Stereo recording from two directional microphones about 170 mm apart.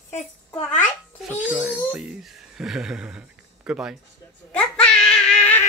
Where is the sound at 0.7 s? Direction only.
10° left (ahead or behind).